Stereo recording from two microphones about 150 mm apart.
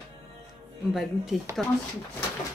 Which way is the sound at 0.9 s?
Centre (ahead or behind).